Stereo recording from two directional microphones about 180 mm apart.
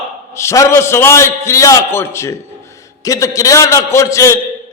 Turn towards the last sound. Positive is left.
turn(degrees=15)  # may be behind; listen again after turning